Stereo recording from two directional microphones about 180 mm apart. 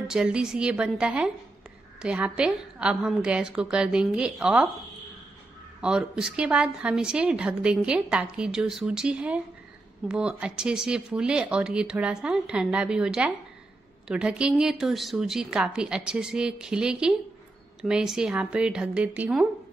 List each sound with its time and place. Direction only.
0.1 s a woman's voice: 5° right (ahead or behind)
5.8 s a woman's voice: 5° right (ahead or behind)